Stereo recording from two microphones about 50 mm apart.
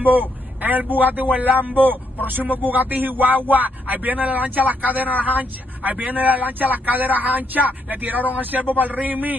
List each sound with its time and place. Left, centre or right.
0.0 s a man's voice: right